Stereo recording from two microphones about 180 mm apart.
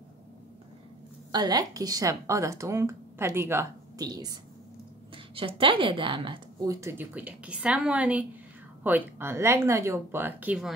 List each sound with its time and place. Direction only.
1.3 s a woman's voice: 20° right (ahead or behind)